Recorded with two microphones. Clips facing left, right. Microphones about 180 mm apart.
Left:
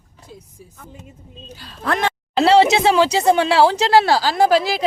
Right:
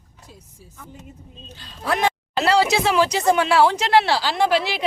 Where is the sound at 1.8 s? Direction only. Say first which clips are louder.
Left 1 dB; 5° right (ahead or behind).